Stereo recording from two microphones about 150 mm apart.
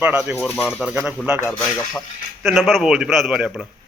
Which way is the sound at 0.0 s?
10° right (ahead or behind).